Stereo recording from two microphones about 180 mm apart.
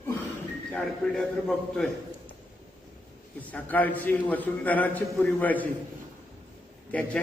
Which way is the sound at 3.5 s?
10° left (ahead or behind).